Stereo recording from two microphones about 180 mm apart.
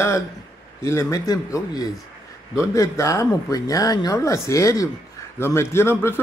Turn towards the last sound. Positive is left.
turn(degrees=15)  # may be behind; listen again after turning